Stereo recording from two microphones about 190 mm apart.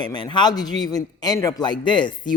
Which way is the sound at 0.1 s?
25° left (ahead or behind).